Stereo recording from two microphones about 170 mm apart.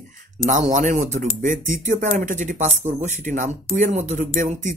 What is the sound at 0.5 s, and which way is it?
Speech, 50° right (ahead or behind).